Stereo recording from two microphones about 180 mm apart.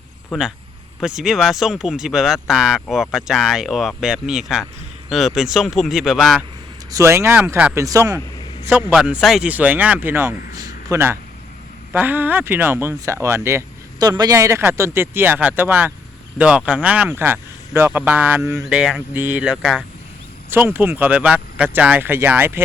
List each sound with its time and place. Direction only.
0.3 s speech: centre (ahead or behind)
6.9 s speech: 15° right (ahead or behind)
8.7 s speech: 5° right (ahead or behind)